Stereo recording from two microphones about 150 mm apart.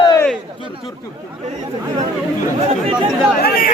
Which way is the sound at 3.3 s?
85° left.